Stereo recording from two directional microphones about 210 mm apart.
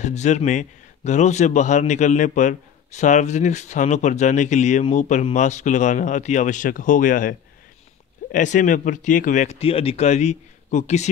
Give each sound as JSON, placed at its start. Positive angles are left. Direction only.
{"t": 0.0, "sound": "a man's voice", "side_deg": 35}